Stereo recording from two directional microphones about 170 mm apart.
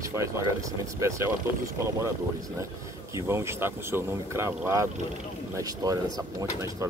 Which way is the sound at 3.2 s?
15° right (ahead or behind).